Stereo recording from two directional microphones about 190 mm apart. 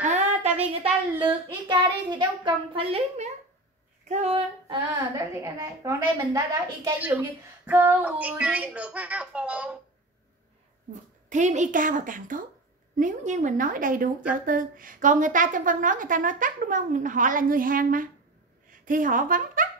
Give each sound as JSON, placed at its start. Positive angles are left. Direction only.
{"t": 0.0, "sound": "a sound", "side_deg": -40}
{"t": 1.7, "sound": "a child's voice", "side_deg": -25}
{"t": 4.8, "sound": "a woman's voice", "side_deg": -15}
{"t": 10.9, "sound": "a woman's voice", "side_deg": -40}